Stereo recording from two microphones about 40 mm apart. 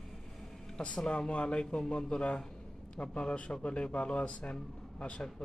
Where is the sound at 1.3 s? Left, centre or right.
Left.